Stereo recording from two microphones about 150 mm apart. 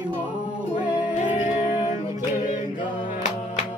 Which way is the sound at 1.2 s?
55° left (ahead or behind).